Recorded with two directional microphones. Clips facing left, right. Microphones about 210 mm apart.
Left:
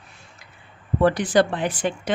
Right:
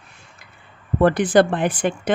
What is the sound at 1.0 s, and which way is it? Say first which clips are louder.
A woman's voice: right 3 dB; 50° right (ahead or behind).